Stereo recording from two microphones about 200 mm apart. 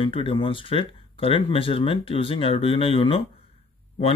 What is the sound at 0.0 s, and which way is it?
Speech, 25° left (ahead or behind).